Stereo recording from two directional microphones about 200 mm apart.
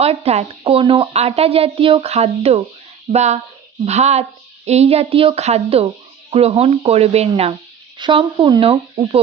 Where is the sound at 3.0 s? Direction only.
35° right (ahead or behind).